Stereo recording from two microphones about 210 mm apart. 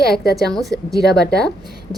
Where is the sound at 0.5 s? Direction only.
Centre (ahead or behind).